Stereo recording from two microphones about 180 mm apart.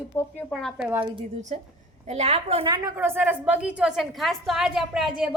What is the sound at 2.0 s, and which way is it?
Speech, 35° right (ahead or behind).